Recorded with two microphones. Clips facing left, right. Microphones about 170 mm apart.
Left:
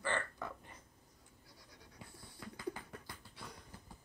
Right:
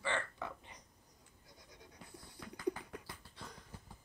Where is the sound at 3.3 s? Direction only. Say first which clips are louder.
Left 1 dB; 10° left (ahead or behind).